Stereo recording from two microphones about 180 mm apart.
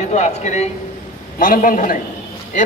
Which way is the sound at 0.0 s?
40° left (ahead or behind).